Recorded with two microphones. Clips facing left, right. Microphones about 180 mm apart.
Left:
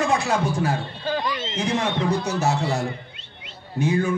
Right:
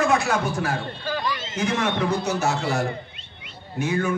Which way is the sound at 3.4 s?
30° left (ahead or behind).